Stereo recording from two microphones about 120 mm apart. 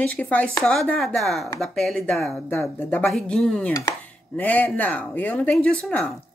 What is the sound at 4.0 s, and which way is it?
Speech, 15° left (ahead or behind).